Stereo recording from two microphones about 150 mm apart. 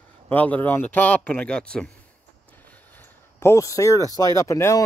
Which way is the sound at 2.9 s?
15° left (ahead or behind).